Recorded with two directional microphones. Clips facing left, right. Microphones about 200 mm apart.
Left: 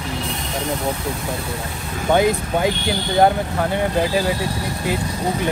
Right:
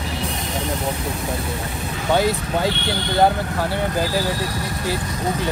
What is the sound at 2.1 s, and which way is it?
Speech, 15° left (ahead or behind).